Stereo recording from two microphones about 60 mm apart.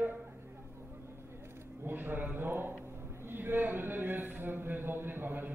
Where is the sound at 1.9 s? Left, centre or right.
Right.